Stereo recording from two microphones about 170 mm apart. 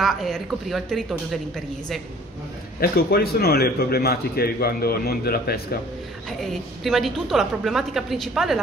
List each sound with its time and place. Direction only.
0.0 s a woman's voice: centre (ahead or behind)
2.8 s a man's voice: 65° left (ahead or behind)
6.4 s a woman's voice: centre (ahead or behind)